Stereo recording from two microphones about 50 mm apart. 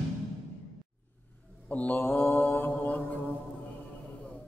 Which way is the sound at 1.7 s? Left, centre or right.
Left.